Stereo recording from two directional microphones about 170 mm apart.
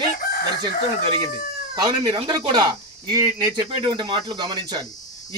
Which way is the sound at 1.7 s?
25° right (ahead or behind).